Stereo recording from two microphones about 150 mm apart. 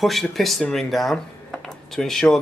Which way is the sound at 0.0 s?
Centre (ahead or behind).